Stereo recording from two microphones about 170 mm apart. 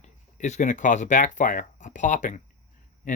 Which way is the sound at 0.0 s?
45° left (ahead or behind).